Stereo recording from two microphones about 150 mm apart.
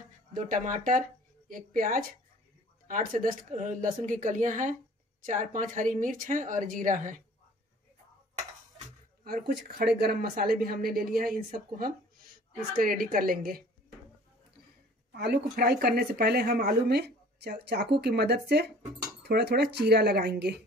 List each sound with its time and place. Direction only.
0.3 s a woman's voice: 60° right (ahead or behind)
9.2 s speech: 80° right
15.1 s speech: 90° right